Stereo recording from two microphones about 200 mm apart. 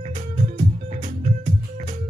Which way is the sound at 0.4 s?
35° right (ahead or behind).